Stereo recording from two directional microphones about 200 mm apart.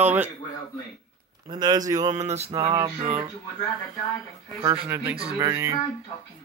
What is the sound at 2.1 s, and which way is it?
Music, 35° right (ahead or behind).